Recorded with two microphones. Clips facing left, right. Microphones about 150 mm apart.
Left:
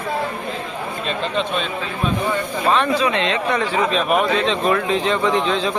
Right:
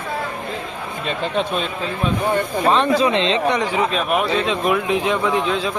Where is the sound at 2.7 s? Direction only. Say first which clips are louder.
Right 2 dB; 30° right (ahead or behind).